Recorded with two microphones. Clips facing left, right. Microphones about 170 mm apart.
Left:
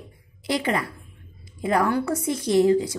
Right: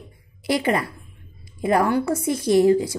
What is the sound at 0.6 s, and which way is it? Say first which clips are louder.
A woman's voice: right 3 dB; 30° right (ahead or behind).